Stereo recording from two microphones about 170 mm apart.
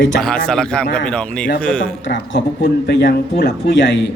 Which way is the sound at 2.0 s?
90° left.